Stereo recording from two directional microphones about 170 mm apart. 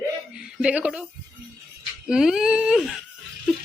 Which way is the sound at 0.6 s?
5° right (ahead or behind).